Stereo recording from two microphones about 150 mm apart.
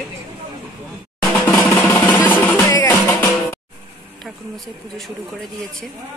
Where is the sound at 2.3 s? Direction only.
10° left (ahead or behind).